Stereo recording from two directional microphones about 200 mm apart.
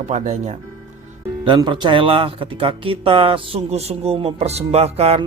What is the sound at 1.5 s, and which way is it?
Speech, 25° right (ahead or behind).